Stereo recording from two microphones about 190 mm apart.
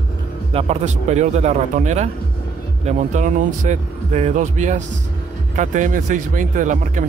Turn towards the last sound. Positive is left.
turn(degrees=-40)  # may be behind; listen again after turning